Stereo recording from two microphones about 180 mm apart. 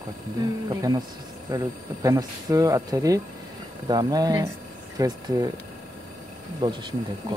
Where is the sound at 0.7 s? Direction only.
20° right (ahead or behind).